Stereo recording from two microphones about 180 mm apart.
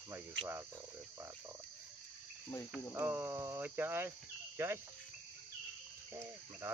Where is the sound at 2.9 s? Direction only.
10° right (ahead or behind).